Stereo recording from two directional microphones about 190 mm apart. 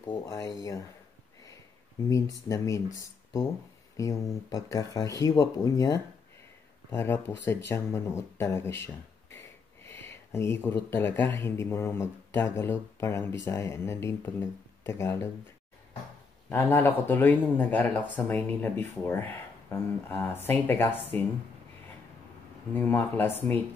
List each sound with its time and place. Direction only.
0.0 s speech: 20° left (ahead or behind)
2.0 s speech: 15° left (ahead or behind)
3.9 s speech: 15° left (ahead or behind)
16.4 s speech: 10° left (ahead or behind)
22.8 s speech: 10° left (ahead or behind)